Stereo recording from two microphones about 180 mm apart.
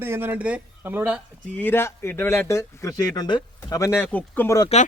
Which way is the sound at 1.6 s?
10° left (ahead or behind).